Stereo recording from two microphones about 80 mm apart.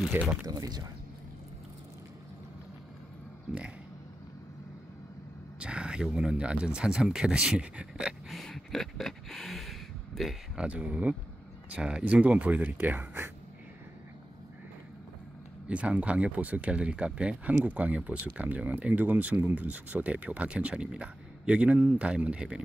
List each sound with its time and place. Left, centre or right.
0.2 s speech: right
0.5 s speech: right
5.6 s speech: centre
8.3 s a sound: centre
10.6 s speech: centre
15.7 s speech: centre